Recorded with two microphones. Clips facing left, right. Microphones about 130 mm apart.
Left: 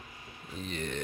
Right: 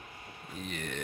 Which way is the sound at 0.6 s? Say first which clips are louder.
Left 3 dB; 5° right (ahead or behind).